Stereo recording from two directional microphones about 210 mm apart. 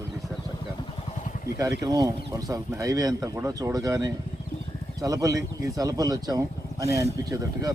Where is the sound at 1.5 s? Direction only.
15° right (ahead or behind).